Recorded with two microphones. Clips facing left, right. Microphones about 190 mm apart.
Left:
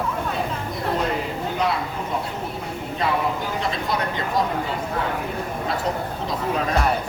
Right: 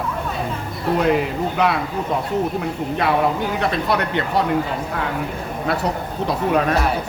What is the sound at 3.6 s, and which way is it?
Speech, 65° right (ahead or behind).